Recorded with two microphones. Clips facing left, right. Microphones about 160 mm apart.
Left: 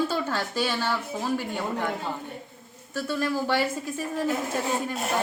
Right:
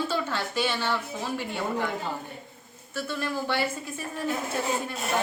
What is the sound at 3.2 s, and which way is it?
Speech, 40° left (ahead or behind).